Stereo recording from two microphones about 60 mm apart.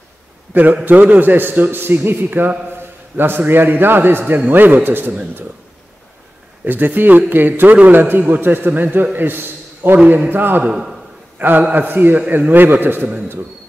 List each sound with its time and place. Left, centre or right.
0.8 s a man's voice: right
6.6 s a man's voice: right
10.6 s a man's voice: centre
11.3 s a man's voice: right